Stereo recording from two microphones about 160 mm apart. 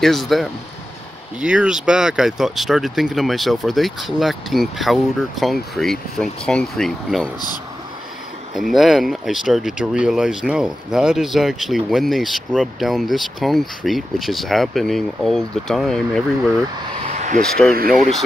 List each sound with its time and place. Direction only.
0.0 s speech: centre (ahead or behind)
8.5 s speech: centre (ahead or behind)
17.0 s vehicle: 45° right (ahead or behind)
17.4 s speech: 5° left (ahead or behind)